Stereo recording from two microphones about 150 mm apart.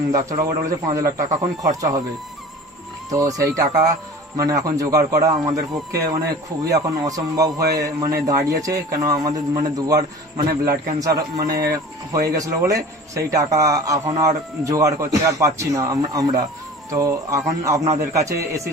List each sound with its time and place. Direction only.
0.1 s speech: 20° right (ahead or behind)
3.1 s speech: 25° right (ahead or behind)